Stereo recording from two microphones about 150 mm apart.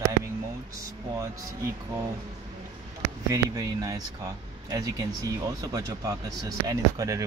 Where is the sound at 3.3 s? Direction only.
25° right (ahead or behind).